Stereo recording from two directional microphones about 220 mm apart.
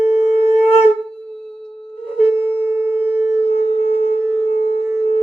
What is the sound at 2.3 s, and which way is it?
Busy signal, 5° right (ahead or behind).